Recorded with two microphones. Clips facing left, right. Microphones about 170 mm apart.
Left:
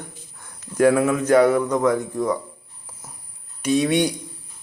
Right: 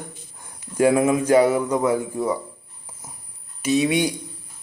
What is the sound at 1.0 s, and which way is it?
Speech, 10° right (ahead or behind).